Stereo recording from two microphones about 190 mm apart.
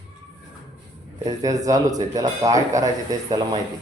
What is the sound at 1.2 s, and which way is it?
Speech, 20° right (ahead or behind).